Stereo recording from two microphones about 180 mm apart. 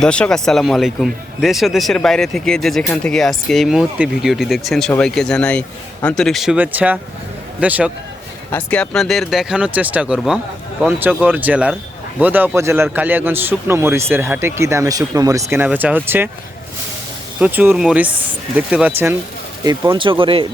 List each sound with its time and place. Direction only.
0.0 s a man's voice: 5° left (ahead or behind)
8.5 s a man's voice: 5° left (ahead or behind); by 16.3 s 10° right (ahead or behind)
17.4 s a man's voice: 10° right (ahead or behind)
19.6 s speech: 25° right (ahead or behind)